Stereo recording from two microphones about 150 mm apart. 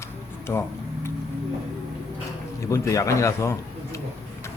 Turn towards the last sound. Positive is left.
turn(degrees=20)  # may be behind; listen again after turning